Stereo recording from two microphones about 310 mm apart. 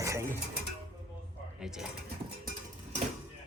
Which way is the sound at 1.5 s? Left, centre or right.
Centre.